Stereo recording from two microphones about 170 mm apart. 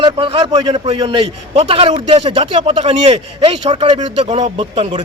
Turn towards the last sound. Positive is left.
turn(degrees=-30)  # may be behind; listen again after turning